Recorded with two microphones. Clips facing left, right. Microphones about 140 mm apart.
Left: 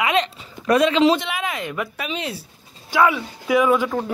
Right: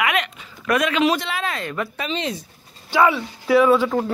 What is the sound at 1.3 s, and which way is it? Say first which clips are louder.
Speech: even; 15° left (ahead or behind).